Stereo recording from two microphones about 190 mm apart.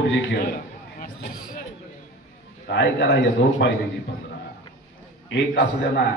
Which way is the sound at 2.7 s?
65° left (ahead or behind).